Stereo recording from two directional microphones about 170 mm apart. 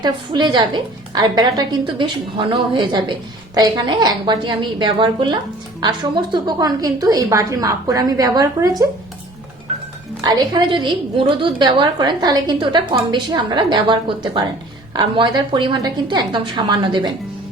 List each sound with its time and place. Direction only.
0.0 s a woman's voice: 25° right (ahead or behind)
10.2 s a woman's voice: 25° right (ahead or behind)